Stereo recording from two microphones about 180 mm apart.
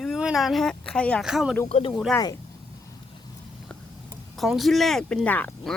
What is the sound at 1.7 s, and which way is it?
Speech, 30° left (ahead or behind).